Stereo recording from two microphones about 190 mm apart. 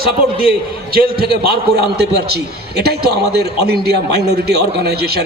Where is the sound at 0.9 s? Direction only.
50° right (ahead or behind).